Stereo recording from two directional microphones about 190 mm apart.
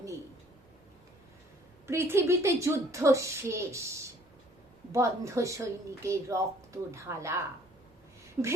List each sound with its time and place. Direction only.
1.9 s a woman's voice: 15° right (ahead or behind)
8.4 s a woman's voice: 10° right (ahead or behind)